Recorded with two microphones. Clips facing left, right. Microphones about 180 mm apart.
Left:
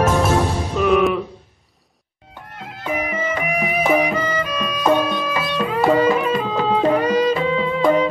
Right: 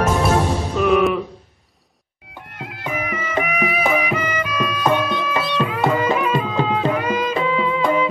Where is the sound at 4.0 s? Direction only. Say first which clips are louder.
Left 3 dB; 35° left (ahead or behind).